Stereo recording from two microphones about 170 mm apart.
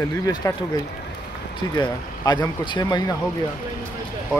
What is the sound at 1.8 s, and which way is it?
Speech, 25° left (ahead or behind).